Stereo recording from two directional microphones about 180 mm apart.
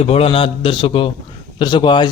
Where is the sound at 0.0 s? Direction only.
35° left (ahead or behind).